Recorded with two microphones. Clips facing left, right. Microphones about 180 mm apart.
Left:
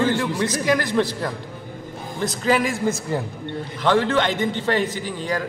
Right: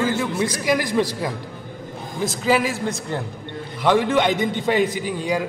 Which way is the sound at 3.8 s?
15° right (ahead or behind).